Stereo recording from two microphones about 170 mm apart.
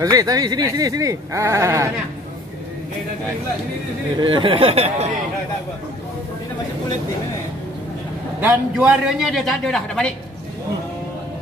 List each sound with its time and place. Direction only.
0.0 s speech: 20° right (ahead or behind)
4.2 s speech: 30° right (ahead or behind)
8.4 s a man's voice: 10° right (ahead or behind)